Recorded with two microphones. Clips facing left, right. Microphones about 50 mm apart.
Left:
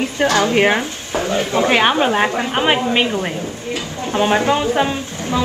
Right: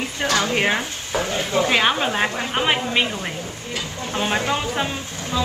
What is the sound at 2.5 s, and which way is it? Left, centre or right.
A woman's voice, centre.